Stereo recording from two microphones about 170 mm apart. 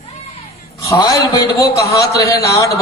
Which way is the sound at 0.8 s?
20° left (ahead or behind).